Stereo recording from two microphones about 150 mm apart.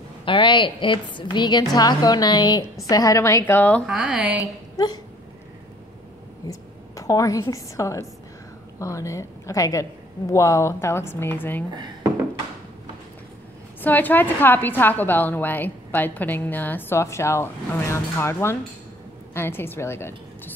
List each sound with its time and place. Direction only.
0.2 s a woman's voice: 35° left (ahead or behind); by 3.8 s 10° left (ahead or behind)
3.8 s speech: 5° right (ahead or behind)
4.4 s a woman's voice: 25° left (ahead or behind)
6.5 s a woman's voice: 20° left (ahead or behind)
11.7 s speech: 30° right (ahead or behind)
13.7 s a woman's voice: 10° left (ahead or behind)